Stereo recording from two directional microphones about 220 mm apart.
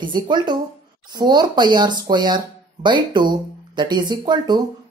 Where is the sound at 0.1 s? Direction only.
20° right (ahead or behind).